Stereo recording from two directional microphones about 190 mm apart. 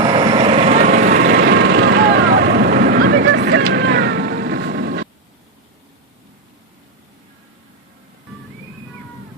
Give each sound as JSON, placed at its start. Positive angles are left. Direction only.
{"t": 0.0, "sound": "vehicle", "side_deg": -25}